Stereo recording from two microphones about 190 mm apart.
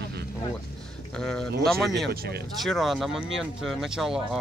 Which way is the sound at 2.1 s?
55° right (ahead or behind).